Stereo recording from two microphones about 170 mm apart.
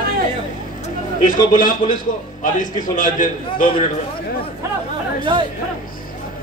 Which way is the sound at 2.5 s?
50° left (ahead or behind).